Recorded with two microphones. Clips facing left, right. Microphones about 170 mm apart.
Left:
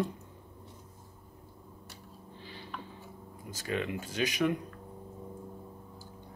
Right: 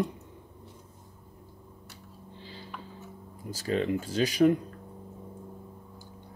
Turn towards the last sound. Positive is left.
turn(degrees=-35)  # may be behind; listen again after turning